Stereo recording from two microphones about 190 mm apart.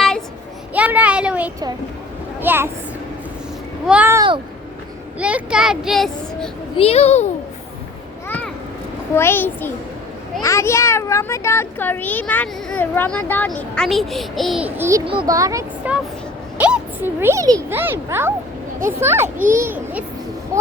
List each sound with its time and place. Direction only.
0.7 s a sound: 10° right (ahead or behind)
2.4 s speech: 10° right (ahead or behind)
3.8 s a child's voice: 10° right (ahead or behind)
5.2 s a child's voice: 5° right (ahead or behind)
6.7 s a child's voice: 35° left (ahead or behind)
9.1 s a child's voice: 10° left (ahead or behind); by 15.0 s 15° right (ahead or behind)
15.0 s a child's voice: 25° right (ahead or behind)